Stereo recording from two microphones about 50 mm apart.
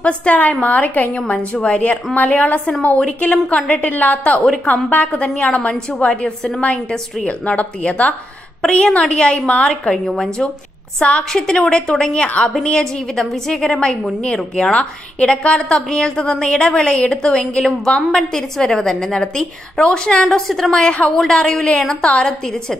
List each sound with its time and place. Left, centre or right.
0.0 s a woman's voice: left
20.2 s a woman's voice: centre